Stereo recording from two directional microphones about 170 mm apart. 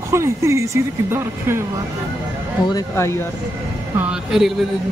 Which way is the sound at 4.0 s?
5° right (ahead or behind).